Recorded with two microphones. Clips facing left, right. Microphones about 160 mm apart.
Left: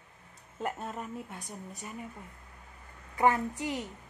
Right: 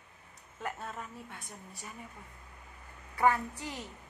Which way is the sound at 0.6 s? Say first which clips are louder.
Left 4 dB; 20° left (ahead or behind).